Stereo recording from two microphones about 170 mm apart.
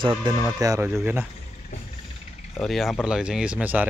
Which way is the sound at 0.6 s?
15° right (ahead or behind).